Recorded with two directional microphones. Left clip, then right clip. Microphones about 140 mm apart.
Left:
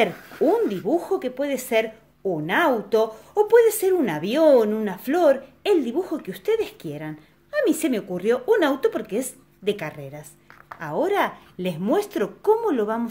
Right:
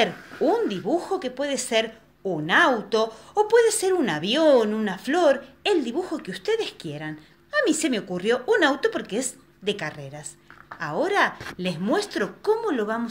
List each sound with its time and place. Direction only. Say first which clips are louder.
0.0 s speech: left 2 dB; 40° left (ahead or behind)